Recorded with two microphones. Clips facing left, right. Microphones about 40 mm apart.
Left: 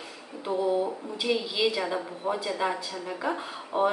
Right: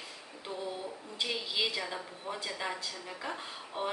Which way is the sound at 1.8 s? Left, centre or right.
Left.